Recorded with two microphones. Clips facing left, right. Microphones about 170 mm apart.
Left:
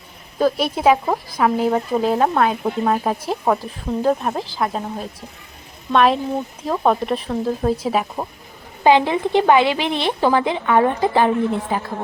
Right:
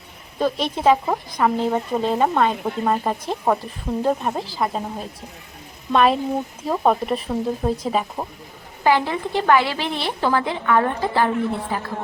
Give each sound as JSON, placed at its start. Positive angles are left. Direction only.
{"t": 0.3, "sound": "speech", "side_deg": 5}
{"t": 8.8, "sound": "a woman's voice", "side_deg": 20}